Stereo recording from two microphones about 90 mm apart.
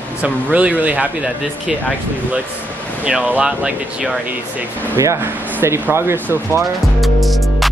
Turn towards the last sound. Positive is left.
turn(degrees=0)  # may be behind; listen again after turning